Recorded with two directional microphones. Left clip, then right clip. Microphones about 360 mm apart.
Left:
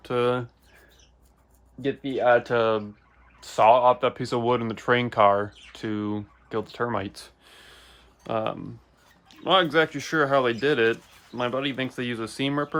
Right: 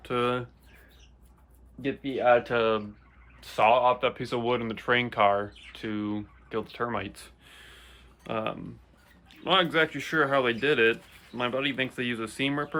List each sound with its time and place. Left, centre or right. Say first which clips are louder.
0.0 s speech: left 4 dB; left
1.8 s speech: left 3 dB; left